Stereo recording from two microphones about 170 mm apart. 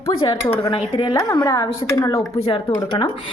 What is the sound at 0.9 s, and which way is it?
Cutlery, 25° left (ahead or behind).